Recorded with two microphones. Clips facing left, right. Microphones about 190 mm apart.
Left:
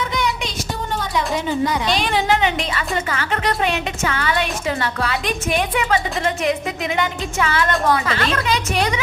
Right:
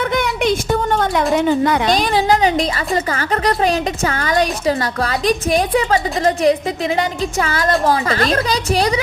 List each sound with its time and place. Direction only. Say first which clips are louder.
0.0 s music: right 5 dB; 55° right (ahead or behind)
1.9 s a woman's voice: right 4 dB; 40° right (ahead or behind)